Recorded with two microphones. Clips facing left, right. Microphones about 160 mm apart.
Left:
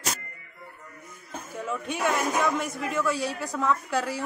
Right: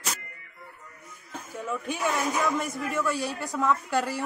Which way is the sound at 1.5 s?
Centre (ahead or behind).